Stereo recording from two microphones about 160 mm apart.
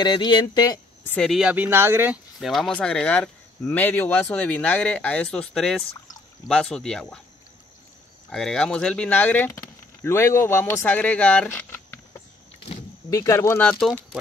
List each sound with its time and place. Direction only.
0.0 s speech: 25° left (ahead or behind)
1.0 s speech: 5° left (ahead or behind); by 2.1 s 15° right (ahead or behind)
2.4 s speech: centre (ahead or behind)
8.3 s speech: 5° left (ahead or behind)